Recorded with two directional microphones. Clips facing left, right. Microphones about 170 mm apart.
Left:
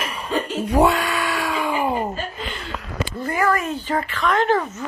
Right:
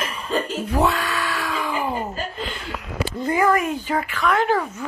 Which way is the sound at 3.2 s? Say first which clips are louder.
Right 2 dB; 15° right (ahead or behind).